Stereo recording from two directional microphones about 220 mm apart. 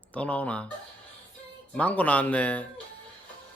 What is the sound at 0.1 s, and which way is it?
Speech, 5° left (ahead or behind).